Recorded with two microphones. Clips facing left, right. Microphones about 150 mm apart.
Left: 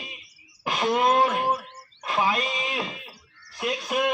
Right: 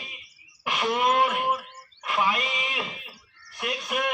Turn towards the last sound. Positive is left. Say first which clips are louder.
# left 3 dB
turn(degrees=25)  # may be behind; listen again after turning